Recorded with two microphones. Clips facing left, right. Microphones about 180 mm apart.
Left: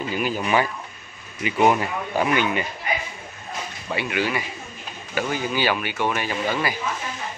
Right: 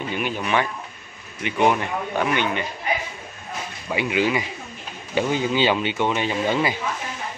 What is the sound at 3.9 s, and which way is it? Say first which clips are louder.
Speech: right 3 dB; 20° right (ahead or behind).